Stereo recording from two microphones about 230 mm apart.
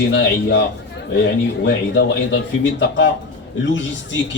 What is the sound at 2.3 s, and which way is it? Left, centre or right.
Speech, left.